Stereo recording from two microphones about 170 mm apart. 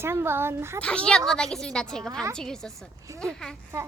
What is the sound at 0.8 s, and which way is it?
A woman's voice, 5° left (ahead or behind).